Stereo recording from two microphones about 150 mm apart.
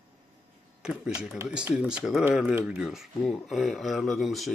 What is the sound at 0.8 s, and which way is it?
Speech, 5° right (ahead or behind).